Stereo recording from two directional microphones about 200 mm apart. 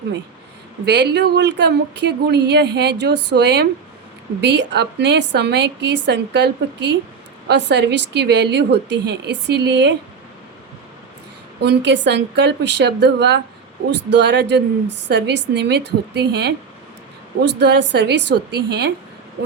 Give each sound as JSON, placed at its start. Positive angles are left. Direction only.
{"t": 0.9, "sound": "a woman's voice", "side_deg": -60}
{"t": 11.6, "sound": "a woman's voice", "side_deg": -60}